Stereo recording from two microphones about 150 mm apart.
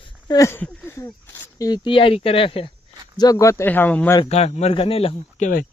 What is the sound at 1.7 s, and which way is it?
Speech, 35° left (ahead or behind).